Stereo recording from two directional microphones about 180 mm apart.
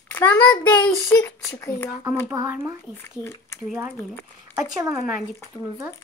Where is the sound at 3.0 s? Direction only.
15° left (ahead or behind).